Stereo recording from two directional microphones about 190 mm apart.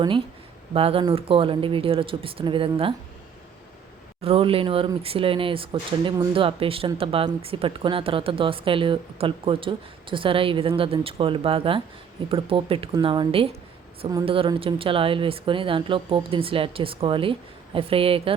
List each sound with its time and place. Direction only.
0.7 s speech: 30° right (ahead or behind)
4.2 s speech: 30° right (ahead or behind)